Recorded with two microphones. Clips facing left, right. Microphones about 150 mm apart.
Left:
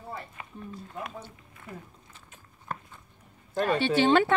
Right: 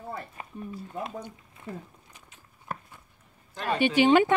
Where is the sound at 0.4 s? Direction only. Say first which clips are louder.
Right 2 dB; 40° right (ahead or behind).